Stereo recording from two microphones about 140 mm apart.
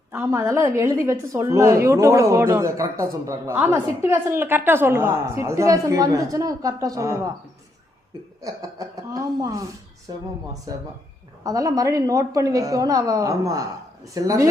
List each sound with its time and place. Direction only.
0.1 s a woman's voice: 20° right (ahead or behind)
8.4 s speech: 25° right (ahead or behind)
10.7 s a woman's voice: 25° right (ahead or behind)